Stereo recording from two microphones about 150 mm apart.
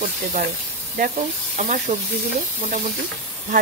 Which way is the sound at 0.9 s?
60° right (ahead or behind).